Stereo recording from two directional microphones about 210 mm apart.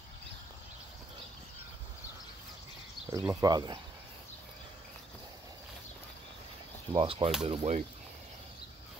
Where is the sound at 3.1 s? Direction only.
15° right (ahead or behind).